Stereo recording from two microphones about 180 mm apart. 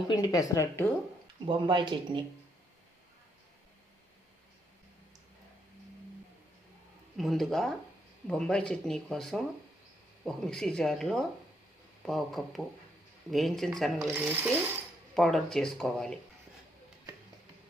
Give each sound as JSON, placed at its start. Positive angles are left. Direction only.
{"t": 0.1, "sound": "a woman's voice", "side_deg": 20}
{"t": 1.5, "sound": "speech", "side_deg": -25}
{"t": 7.2, "sound": "speech", "side_deg": 0}
{"t": 14.2, "sound": "speech", "side_deg": -10}
{"t": 15.1, "sound": "speech", "side_deg": 0}